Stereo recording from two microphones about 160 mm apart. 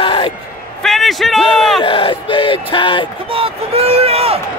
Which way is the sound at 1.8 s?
35° left (ahead or behind).